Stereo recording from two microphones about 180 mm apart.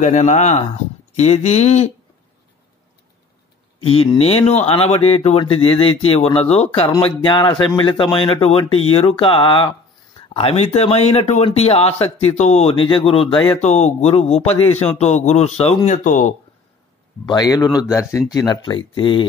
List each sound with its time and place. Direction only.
0.0 s speech: 40° left (ahead or behind)
3.8 s speech: 35° left (ahead or behind)
17.3 s speech: 20° left (ahead or behind)